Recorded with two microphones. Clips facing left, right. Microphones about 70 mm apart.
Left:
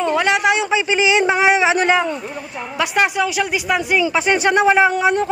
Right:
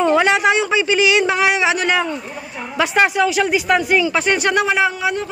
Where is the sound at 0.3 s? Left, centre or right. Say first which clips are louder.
Right 1 dB; centre; by 2.0 s left.